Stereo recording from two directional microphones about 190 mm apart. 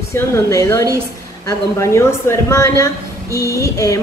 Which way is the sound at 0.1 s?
15° left (ahead or behind).